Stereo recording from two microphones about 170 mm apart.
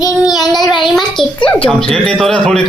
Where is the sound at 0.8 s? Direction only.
Centre (ahead or behind).